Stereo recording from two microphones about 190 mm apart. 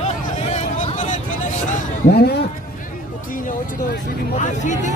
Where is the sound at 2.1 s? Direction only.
60° left (ahead or behind).